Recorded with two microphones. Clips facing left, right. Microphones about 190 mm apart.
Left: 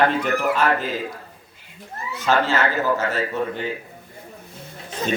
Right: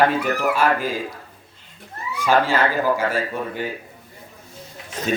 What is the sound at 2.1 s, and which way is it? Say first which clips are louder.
A man's voice: right 2 dB; 10° right (ahead or behind).